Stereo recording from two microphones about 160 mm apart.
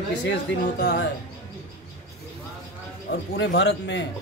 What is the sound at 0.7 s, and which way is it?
Speech, 90° left.